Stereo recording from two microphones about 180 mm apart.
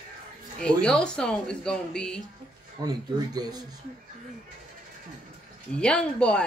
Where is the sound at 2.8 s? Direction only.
20° right (ahead or behind).